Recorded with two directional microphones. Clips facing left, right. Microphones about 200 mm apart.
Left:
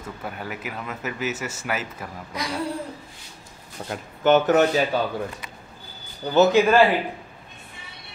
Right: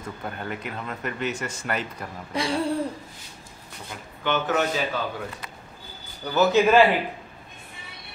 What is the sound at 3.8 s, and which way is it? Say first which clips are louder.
Speech: left 9 dB; 40° left (ahead or behind).